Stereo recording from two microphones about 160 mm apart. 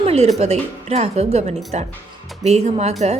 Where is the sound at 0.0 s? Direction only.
40° right (ahead or behind).